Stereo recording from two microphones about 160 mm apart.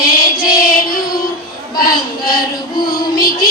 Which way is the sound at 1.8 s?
65° left (ahead or behind).